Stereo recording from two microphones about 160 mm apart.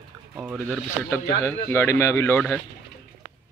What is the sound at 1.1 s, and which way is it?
A man's voice, 15° left (ahead or behind).